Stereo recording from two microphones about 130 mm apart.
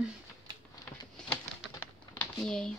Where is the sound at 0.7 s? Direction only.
30° left (ahead or behind).